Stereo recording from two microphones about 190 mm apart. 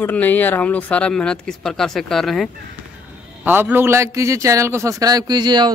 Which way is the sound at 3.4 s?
10° right (ahead or behind).